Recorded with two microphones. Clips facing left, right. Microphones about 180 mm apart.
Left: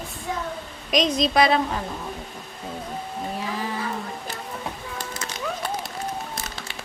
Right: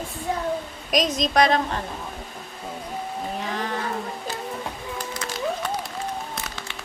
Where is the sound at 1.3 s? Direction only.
45° right (ahead or behind).